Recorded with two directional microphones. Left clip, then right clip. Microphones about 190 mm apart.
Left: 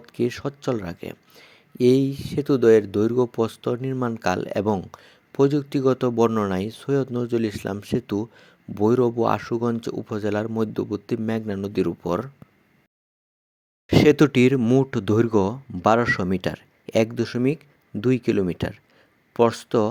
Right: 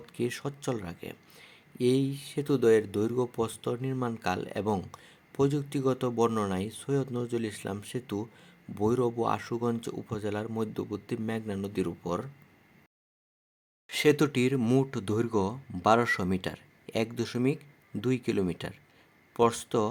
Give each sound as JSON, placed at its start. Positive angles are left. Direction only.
{"t": 0.0, "sound": "speech", "side_deg": 30}
{"t": 13.8, "sound": "speech", "side_deg": 30}